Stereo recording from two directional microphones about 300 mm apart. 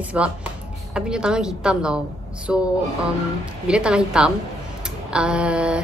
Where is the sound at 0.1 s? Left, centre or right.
Centre.